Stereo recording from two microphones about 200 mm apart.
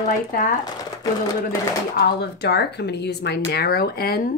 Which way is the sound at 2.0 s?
55° left (ahead or behind).